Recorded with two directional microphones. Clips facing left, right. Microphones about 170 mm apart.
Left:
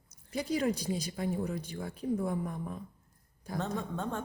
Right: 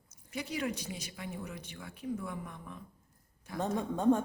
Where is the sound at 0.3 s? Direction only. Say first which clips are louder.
Left 5 dB; 35° left (ahead or behind).